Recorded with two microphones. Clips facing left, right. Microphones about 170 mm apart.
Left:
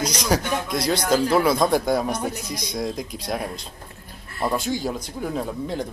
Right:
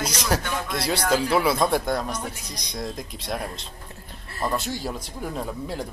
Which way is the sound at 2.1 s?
45° left (ahead or behind).